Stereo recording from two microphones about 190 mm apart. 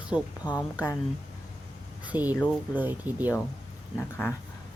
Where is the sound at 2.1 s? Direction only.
10° right (ahead or behind).